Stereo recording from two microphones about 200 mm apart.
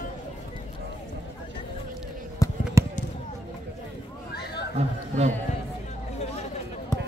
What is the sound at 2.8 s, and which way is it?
Basketball bounce, 15° right (ahead or behind).